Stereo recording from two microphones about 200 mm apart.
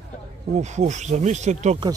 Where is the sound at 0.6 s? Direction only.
35° right (ahead or behind).